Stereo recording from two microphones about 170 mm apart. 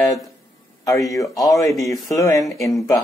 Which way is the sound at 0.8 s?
20° left (ahead or behind).